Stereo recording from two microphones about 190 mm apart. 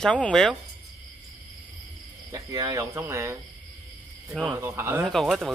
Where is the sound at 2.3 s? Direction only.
15° right (ahead or behind).